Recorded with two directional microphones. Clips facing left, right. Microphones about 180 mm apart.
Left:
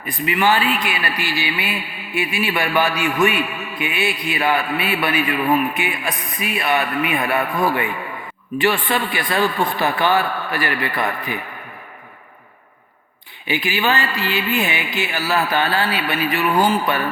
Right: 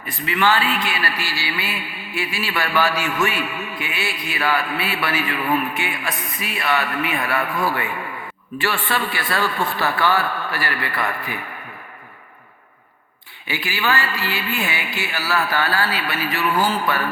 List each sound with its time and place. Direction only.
0.3 s a man's voice: 20° left (ahead or behind)
13.5 s speech: 20° left (ahead or behind)